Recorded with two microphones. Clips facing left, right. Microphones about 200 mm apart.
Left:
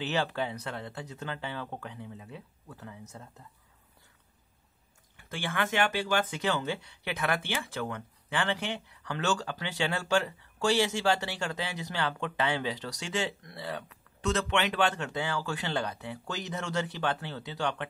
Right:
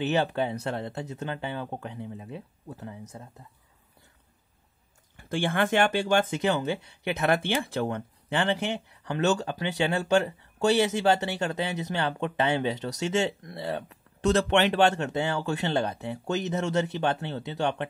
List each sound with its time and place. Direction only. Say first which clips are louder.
0.0 s speech: right 5 dB; 20° right (ahead or behind)
5.1 s speech: right 7 dB; 30° right (ahead or behind)